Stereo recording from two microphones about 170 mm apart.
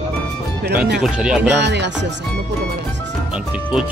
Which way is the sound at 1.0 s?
5° right (ahead or behind).